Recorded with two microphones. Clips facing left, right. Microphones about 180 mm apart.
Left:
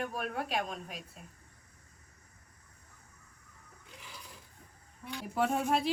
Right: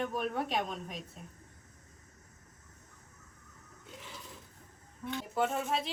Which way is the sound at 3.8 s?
Centre (ahead or behind).